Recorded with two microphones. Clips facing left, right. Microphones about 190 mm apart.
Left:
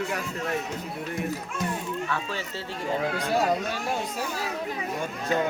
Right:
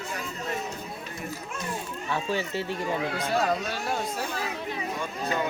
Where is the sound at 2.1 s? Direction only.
15° right (ahead or behind).